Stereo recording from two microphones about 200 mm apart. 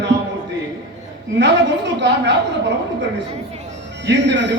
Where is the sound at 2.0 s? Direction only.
60° right (ahead or behind).